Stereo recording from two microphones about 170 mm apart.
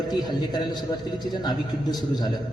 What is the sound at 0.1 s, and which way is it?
Speech, 25° left (ahead or behind).